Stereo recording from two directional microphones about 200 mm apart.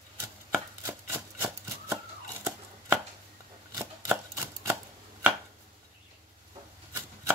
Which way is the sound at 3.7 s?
15° right (ahead or behind).